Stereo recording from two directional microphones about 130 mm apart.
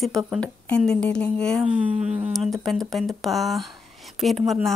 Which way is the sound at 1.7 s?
55° right (ahead or behind).